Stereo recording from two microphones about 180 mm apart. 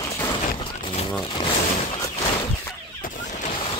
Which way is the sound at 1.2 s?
25° left (ahead or behind).